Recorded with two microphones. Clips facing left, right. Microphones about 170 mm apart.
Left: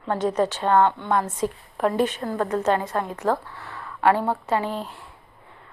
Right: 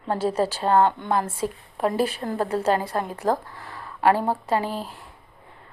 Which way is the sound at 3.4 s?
40° right (ahead or behind).